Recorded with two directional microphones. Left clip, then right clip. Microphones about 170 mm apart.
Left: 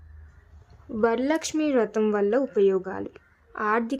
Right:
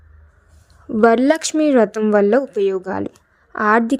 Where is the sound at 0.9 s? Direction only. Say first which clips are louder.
Right 10 dB; 35° right (ahead or behind).